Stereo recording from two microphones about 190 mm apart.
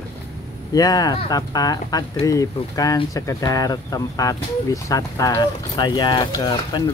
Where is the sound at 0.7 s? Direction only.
20° left (ahead or behind).